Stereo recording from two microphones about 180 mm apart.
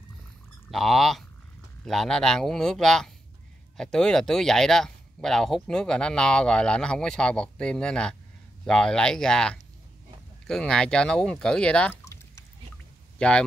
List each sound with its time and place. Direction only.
0.7 s speech: centre (ahead or behind)
13.2 s speech: 5° left (ahead or behind)